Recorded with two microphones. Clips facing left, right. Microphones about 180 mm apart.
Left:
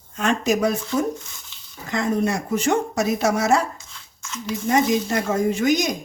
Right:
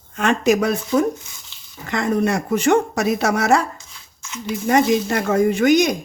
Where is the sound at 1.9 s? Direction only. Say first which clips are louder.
Right 2 dB; 65° right (ahead or behind).